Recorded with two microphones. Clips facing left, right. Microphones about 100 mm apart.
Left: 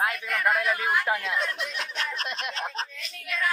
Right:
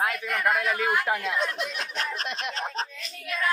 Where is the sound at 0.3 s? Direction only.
Centre (ahead or behind).